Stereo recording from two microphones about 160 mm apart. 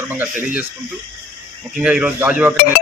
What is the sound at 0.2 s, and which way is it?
Speech, 5° right (ahead or behind).